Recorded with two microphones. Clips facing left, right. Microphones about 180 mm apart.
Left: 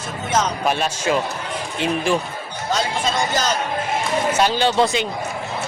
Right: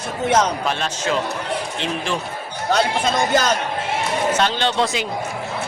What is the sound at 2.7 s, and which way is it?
Speech, 60° right (ahead or behind).